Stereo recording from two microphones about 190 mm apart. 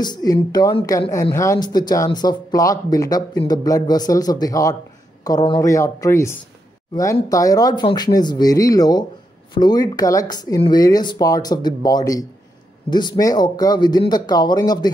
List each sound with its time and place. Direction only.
0.0 s speech: 20° left (ahead or behind)